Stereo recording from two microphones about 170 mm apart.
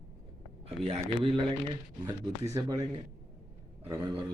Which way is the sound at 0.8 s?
35° right (ahead or behind).